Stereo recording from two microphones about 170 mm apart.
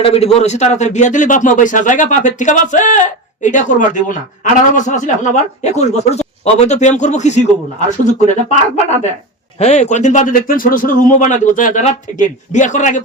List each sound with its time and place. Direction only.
0.0 s a man's voice: 35° left (ahead or behind)